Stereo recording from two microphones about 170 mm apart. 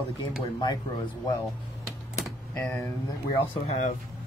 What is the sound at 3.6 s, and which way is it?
Speech, 45° left (ahead or behind).